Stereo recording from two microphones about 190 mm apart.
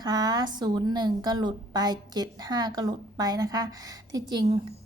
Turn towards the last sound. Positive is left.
turn(degrees=-20)  # may be behind; listen again after turning